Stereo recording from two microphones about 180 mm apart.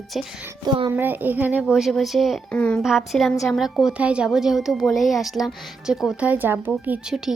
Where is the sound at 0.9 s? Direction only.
10° right (ahead or behind).